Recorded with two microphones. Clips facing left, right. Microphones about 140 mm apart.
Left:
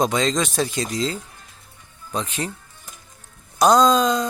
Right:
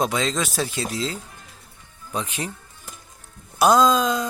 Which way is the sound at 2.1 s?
10° right (ahead or behind).